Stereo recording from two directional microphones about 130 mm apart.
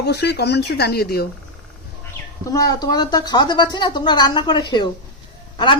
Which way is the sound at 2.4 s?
30° left (ahead or behind).